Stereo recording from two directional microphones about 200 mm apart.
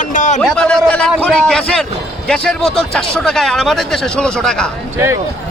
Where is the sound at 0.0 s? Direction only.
40° left (ahead or behind).